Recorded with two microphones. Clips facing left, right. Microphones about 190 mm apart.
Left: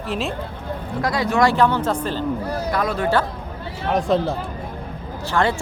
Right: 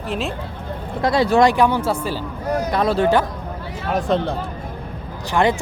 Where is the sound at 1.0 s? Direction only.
30° right (ahead or behind).